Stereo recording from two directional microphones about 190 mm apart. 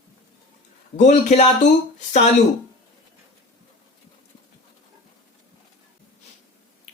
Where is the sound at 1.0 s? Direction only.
40° left (ahead or behind).